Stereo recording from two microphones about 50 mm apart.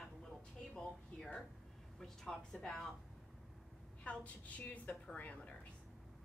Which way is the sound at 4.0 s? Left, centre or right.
Left.